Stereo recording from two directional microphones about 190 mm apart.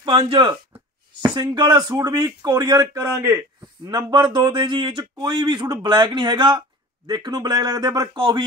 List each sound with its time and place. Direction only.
0.0 s speech: 30° right (ahead or behind)